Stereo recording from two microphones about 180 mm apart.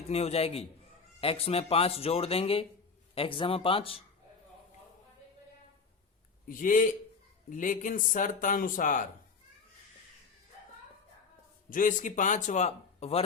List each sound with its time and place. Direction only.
0.1 s speech: 35° left (ahead or behind)
6.5 s speech: 50° left (ahead or behind)
11.7 s speech: 45° left (ahead or behind)